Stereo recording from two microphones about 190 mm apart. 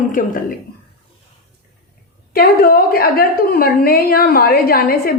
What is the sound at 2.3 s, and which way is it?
A woman's voice, 50° left (ahead or behind).